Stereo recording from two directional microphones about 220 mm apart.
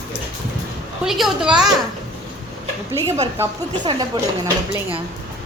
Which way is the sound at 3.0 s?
25° right (ahead or behind).